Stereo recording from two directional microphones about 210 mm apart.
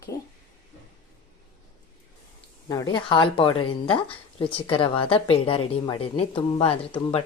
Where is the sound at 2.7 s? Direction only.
20° left (ahead or behind).